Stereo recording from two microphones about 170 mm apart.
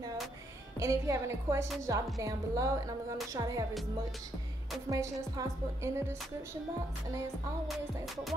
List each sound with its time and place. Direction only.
0.7 s a woman's voice: 20° right (ahead or behind)
4.8 s speech: 20° right (ahead or behind)